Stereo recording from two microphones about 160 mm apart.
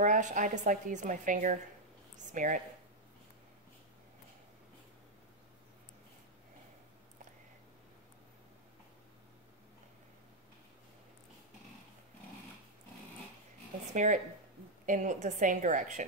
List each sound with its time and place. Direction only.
0.0 s a woman's voice: 50° right (ahead or behind)
13.9 s a woman's voice: 50° right (ahead or behind)